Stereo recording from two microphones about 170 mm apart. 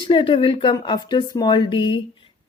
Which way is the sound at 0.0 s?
30° left (ahead or behind).